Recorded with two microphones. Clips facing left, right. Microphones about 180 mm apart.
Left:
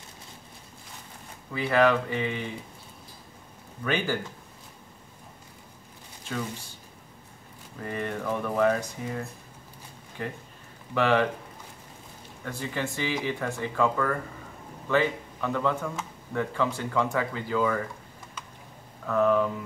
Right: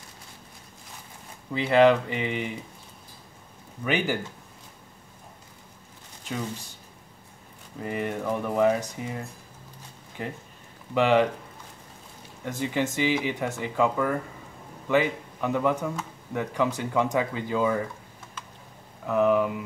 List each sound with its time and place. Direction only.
1.5 s speech: 20° right (ahead or behind)
3.8 s speech: 15° right (ahead or behind)
7.8 s speech: 15° right (ahead or behind)
12.4 s speech: 20° right (ahead or behind)
19.0 s speech: 15° right (ahead or behind)